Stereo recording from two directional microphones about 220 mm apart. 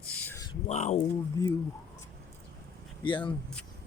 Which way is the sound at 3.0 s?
20° left (ahead or behind).